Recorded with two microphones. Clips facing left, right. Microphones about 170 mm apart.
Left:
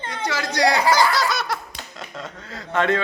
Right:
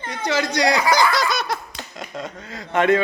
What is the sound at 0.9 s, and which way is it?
Laughter, 15° right (ahead or behind).